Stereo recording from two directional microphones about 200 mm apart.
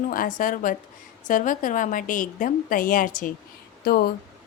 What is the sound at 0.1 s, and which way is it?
A woman's voice, 45° left (ahead or behind).